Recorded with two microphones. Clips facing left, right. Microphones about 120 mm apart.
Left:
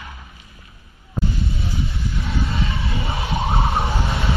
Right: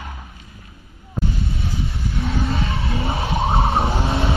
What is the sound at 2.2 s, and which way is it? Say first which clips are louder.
Vehicle: right 3 dB; 30° right (ahead or behind).